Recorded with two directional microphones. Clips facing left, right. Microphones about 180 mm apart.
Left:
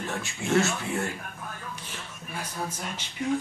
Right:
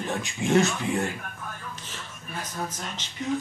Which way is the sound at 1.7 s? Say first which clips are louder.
Even; 10° left (ahead or behind).